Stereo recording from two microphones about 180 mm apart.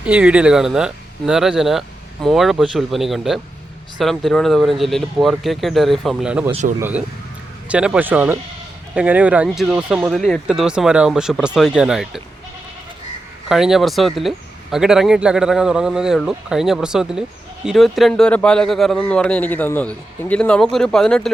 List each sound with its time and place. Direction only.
0.0 s speech: 5° right (ahead or behind)
6.5 s speech: 40° right (ahead or behind)
6.7 s speech: 10° right (ahead or behind)
13.5 s speech: centre (ahead or behind)